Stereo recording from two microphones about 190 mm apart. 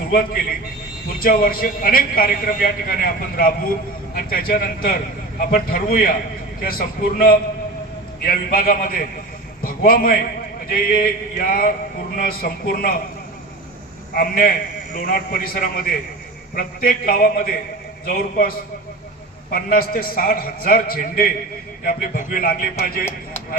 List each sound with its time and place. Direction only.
1.2 s a man's voice: 50° left (ahead or behind)
14.2 s a man's voice: 50° left (ahead or behind)